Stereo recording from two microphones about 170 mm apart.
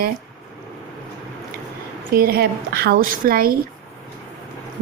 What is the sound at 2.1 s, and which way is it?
A woman's voice, 65° right (ahead or behind).